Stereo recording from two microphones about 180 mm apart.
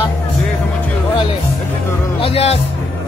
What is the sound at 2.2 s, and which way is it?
Music, 35° left (ahead or behind).